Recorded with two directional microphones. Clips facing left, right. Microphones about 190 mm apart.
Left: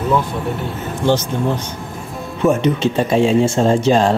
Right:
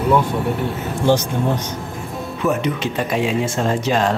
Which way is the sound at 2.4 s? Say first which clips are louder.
Left 5 dB; 25° left (ahead or behind).